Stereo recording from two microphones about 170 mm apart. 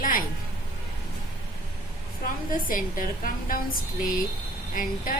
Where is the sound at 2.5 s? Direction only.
55° left (ahead or behind).